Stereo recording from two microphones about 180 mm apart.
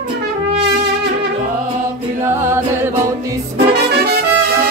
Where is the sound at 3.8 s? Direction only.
60° right (ahead or behind).